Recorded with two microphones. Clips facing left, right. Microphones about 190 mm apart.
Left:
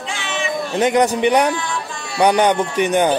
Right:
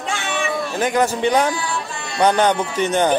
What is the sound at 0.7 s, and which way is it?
A man's voice, 20° left (ahead or behind).